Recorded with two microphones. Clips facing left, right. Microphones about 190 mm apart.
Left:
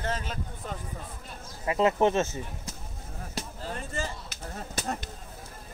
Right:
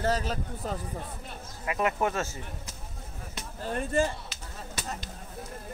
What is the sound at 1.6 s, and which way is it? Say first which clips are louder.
Speech: left 5 dB; 25° left (ahead or behind).